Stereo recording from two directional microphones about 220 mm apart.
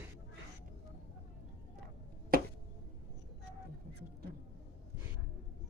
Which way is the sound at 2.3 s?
40° right (ahead or behind).